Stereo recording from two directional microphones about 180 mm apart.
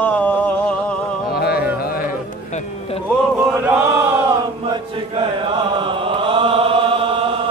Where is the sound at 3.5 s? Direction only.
10° right (ahead or behind).